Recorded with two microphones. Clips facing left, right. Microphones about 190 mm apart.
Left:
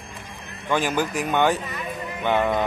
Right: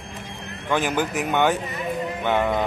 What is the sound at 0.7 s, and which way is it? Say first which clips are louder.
Speech: even; 15° right (ahead or behind).